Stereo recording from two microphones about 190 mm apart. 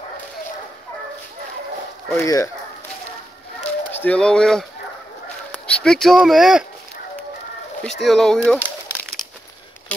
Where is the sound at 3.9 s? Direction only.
5° left (ahead or behind).